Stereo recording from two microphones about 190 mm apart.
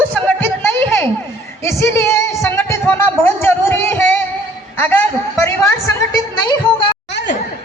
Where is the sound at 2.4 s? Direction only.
10° left (ahead or behind).